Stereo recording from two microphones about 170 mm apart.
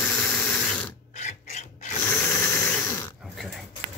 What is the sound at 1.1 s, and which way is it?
Filing, 45° left (ahead or behind).